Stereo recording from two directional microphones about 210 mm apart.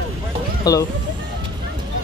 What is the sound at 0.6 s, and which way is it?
Speech, 15° left (ahead or behind).